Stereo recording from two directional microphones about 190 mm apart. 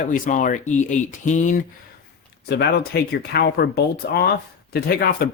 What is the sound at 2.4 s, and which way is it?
Speech, 60° left (ahead or behind).